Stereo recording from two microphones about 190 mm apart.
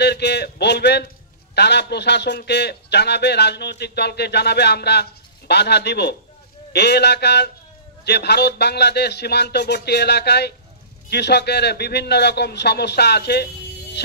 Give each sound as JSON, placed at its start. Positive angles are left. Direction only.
{"t": 0.0, "sound": "a man's voice", "side_deg": 60}